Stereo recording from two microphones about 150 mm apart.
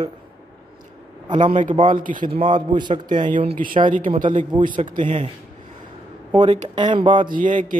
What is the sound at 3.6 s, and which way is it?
Speech, 65° right (ahead or behind).